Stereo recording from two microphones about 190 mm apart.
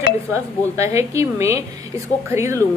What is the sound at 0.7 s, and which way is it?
A woman's voice, 15° right (ahead or behind).